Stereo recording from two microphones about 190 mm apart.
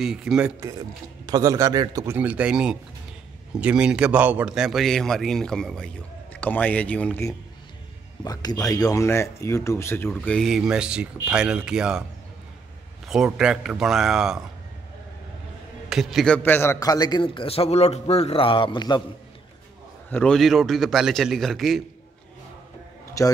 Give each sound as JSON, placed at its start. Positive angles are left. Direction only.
{"t": 0.0, "sound": "a man's voice", "side_deg": -5}
{"t": 1.2, "sound": "a man's voice", "side_deg": -20}
{"t": 13.1, "sound": "a man's voice", "side_deg": -5}
{"t": 15.9, "sound": "a man's voice", "side_deg": 0}
{"t": 16.4, "sound": "a man's voice", "side_deg": 10}
{"t": 20.1, "sound": "a man's voice", "side_deg": 5}
{"t": 23.2, "sound": "speech", "side_deg": 15}